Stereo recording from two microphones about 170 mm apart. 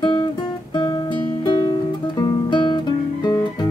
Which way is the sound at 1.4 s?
25° left (ahead or behind).